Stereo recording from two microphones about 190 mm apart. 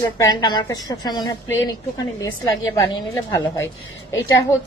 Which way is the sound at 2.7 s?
20° left (ahead or behind).